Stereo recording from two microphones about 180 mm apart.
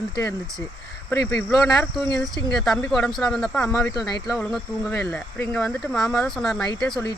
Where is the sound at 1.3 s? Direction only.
5° left (ahead or behind).